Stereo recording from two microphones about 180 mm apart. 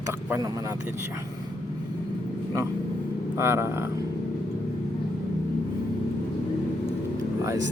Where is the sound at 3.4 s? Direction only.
15° right (ahead or behind).